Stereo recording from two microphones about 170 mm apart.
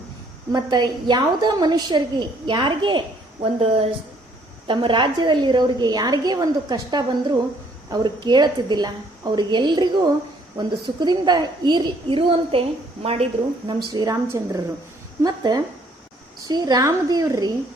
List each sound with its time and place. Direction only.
0.5 s a woman's voice: 25° right (ahead or behind)
13.9 s a woman's voice: 20° right (ahead or behind)